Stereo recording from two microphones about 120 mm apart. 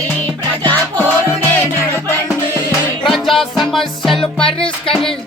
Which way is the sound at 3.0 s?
Centre (ahead or behind).